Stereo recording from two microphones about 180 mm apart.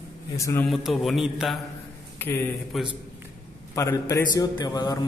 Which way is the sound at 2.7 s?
Centre (ahead or behind).